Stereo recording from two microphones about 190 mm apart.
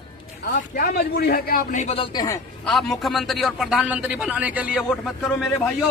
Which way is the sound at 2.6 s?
Centre (ahead or behind).